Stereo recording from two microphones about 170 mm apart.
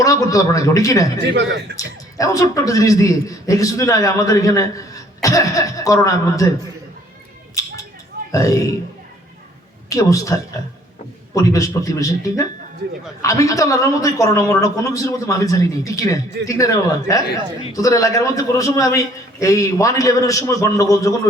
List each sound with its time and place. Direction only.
0.0 s a man's voice: 20° left (ahead or behind)
1.3 s a man's voice: 85° right
1.7 s a man's voice: 20° left (ahead or behind)
7.6 s a sound: 20° left (ahead or behind)
8.3 s a man's voice: 20° left (ahead or behind)
9.9 s a man's voice: 20° left (ahead or behind)
11.3 s a man's voice: 20° left (ahead or behind)